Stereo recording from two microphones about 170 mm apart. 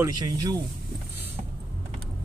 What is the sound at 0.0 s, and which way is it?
Speech, 25° right (ahead or behind).